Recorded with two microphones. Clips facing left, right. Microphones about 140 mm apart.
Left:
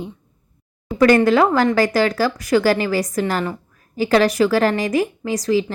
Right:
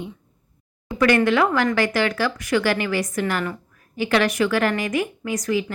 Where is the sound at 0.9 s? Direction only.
35° left (ahead or behind).